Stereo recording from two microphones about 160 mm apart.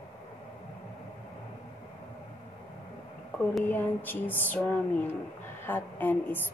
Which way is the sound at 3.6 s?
10° left (ahead or behind).